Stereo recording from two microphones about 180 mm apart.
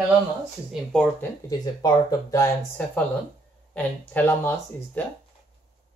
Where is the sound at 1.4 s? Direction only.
20° left (ahead or behind).